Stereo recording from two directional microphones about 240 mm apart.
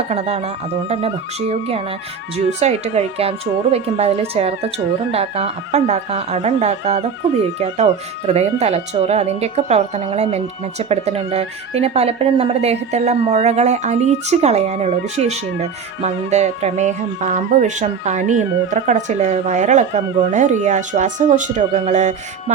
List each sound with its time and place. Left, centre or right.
0.1 s a woman's voice: right
8.3 s a woman's voice: right